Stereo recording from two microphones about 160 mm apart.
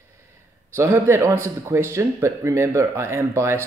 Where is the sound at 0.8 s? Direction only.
15° right (ahead or behind).